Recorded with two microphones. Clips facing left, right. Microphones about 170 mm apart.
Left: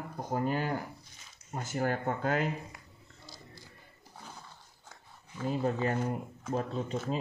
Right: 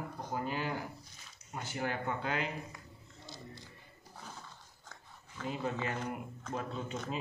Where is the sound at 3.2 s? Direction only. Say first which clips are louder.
Right 3 dB; 25° right (ahead or behind).